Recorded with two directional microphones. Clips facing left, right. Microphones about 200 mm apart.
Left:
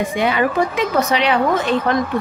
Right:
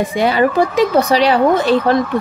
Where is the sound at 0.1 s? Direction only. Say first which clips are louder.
Right 4 dB; 35° right (ahead or behind).